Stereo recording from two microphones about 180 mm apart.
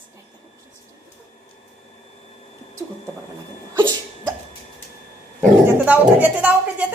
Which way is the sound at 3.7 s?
20° right (ahead or behind).